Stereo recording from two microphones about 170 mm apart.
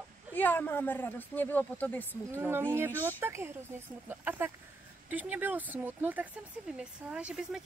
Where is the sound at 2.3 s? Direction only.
15° right (ahead or behind).